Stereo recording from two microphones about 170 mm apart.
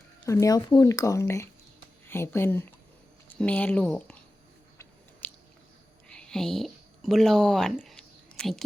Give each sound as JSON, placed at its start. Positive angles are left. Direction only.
{"t": 0.3, "sound": "speech", "side_deg": 20}
{"t": 5.2, "sound": "chewing", "side_deg": 10}
{"t": 6.1, "sound": "speech", "side_deg": 5}
{"t": 7.9, "sound": "whispering", "side_deg": 5}